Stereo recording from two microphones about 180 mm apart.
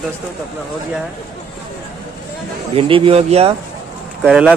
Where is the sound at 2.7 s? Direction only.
30° right (ahead or behind).